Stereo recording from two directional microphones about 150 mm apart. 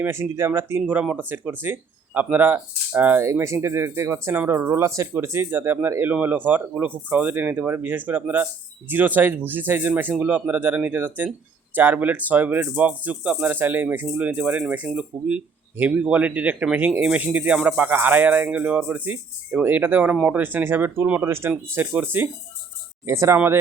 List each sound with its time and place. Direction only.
0.0 s speech: 15° right (ahead or behind)